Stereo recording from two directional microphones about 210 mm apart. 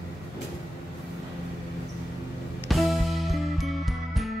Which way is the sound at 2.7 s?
Centre (ahead or behind).